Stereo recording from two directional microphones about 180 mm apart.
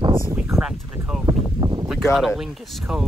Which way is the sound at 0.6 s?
5° right (ahead or behind).